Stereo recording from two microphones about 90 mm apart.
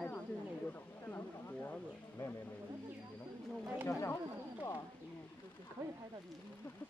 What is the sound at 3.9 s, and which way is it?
Speech, 25° left (ahead or behind).